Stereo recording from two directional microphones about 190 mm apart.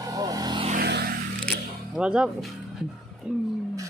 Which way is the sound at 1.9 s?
5° right (ahead or behind).